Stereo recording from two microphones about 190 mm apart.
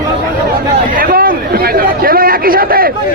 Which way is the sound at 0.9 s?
50° right (ahead or behind).